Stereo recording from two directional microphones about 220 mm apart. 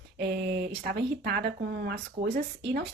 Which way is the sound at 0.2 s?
50° right (ahead or behind).